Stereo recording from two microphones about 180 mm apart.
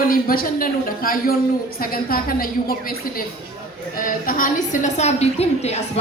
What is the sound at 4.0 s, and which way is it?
A woman's voice, 50° left (ahead or behind).